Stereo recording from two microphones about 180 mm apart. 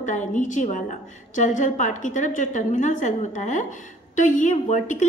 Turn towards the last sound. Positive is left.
turn(degrees=45)  # may be behind; listen again after turning